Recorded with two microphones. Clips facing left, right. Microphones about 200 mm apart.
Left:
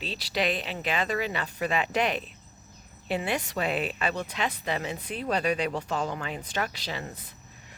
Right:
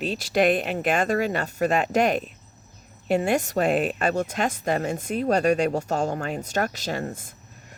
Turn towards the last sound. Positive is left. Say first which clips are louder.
# right 7 dB
turn(degrees=-45)  # may be behind; listen again after turning